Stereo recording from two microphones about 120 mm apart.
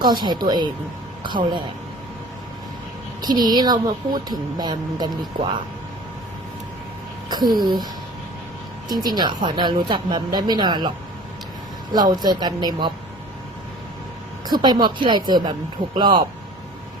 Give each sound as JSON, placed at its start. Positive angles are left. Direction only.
{"t": 0.0, "sound": "speech", "side_deg": -35}
{"t": 3.2, "sound": "speech", "side_deg": -35}
{"t": 7.3, "sound": "speech", "side_deg": -35}
{"t": 8.9, "sound": "speech", "side_deg": -35}
{"t": 11.9, "sound": "speech", "side_deg": -35}
{"t": 14.4, "sound": "speech", "side_deg": -35}